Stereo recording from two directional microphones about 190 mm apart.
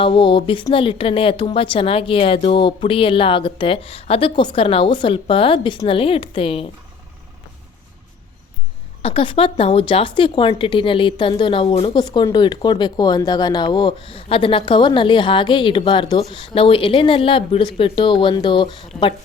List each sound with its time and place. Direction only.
0.0 s a woman's voice: 25° left (ahead or behind)
9.0 s a woman's voice: 30° left (ahead or behind)